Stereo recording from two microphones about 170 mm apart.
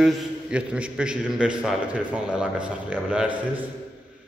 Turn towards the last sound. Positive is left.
turn(degrees=-5)  # may be behind; listen again after turning